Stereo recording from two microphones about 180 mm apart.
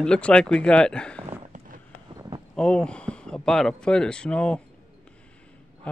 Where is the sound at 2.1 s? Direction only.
25° right (ahead or behind).